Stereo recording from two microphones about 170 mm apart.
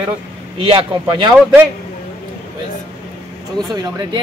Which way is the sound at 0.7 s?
30° right (ahead or behind).